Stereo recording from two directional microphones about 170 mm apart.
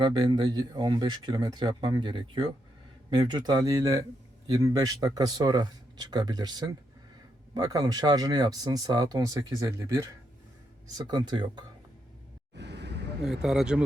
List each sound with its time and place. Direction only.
0.0 s speech: 30° right (ahead or behind)
12.5 s vehicle: 85° right
13.2 s speech: 5° right (ahead or behind)